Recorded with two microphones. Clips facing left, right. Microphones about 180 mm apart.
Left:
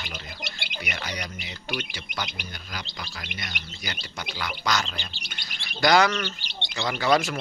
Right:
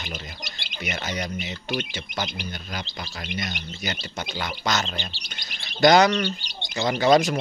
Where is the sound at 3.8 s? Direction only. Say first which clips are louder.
Right 5 dB; 25° right (ahead or behind).